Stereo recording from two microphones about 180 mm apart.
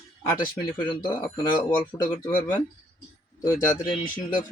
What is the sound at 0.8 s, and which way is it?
Speech, 25° left (ahead or behind).